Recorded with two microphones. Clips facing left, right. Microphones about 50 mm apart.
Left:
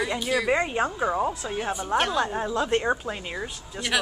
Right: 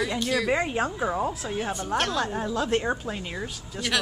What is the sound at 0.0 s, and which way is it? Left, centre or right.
Speech, centre.